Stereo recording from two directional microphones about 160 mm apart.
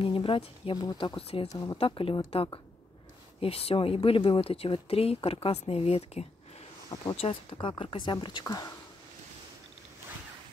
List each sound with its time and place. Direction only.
0.0 s speech: 35° left (ahead or behind)
1.5 s speech: 25° left (ahead or behind)
1.8 s speech: 35° left (ahead or behind)